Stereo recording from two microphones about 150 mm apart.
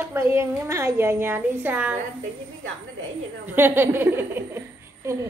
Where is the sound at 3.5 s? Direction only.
15° right (ahead or behind).